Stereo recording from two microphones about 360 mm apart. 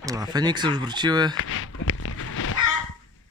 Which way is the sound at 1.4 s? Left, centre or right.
Left.